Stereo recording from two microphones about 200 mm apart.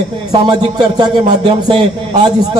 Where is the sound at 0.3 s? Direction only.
20° right (ahead or behind).